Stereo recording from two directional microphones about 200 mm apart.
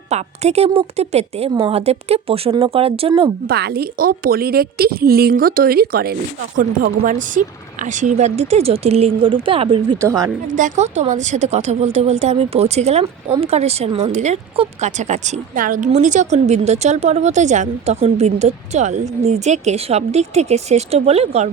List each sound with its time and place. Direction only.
0.1 s a woman's voice: 30° right (ahead or behind)
3.4 s a woman's voice: 50° right (ahead or behind); by 10.3 s 15° right (ahead or behind)
10.5 s speech: 35° right (ahead or behind)